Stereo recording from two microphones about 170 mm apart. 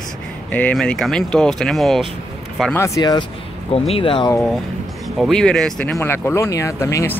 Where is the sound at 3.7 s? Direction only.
35° left (ahead or behind).